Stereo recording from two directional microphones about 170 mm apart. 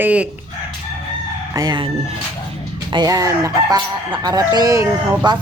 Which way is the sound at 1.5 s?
25° right (ahead or behind).